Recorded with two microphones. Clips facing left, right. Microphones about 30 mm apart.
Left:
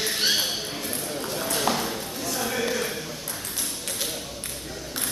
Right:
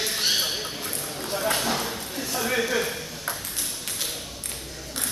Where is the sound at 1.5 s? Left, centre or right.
Centre.